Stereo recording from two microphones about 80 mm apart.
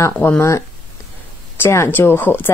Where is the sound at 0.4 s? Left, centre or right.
Left.